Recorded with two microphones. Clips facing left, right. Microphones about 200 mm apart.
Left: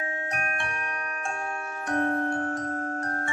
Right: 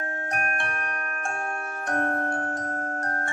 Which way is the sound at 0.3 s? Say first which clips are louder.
Right 2 dB; 55° right (ahead or behind).